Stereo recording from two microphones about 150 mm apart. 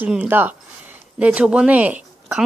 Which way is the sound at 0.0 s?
10° right (ahead or behind).